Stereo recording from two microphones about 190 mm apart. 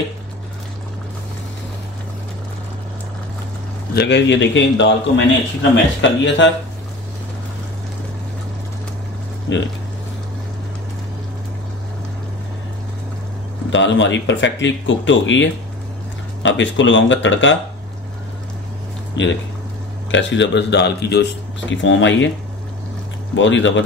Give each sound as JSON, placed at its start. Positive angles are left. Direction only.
{"t": 3.9, "sound": "a man's voice", "side_deg": 65}
{"t": 9.5, "sound": "a man's voice", "side_deg": 70}
{"t": 13.7, "sound": "a man's voice", "side_deg": 75}
{"t": 19.2, "sound": "a man's voice", "side_deg": 70}
{"t": 23.3, "sound": "a man's voice", "side_deg": 75}